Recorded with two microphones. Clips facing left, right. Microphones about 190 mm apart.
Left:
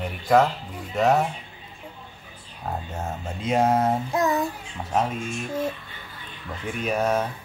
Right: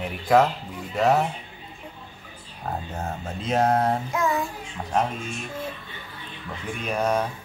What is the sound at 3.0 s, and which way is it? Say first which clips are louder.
Speech: even; centre (ahead or behind).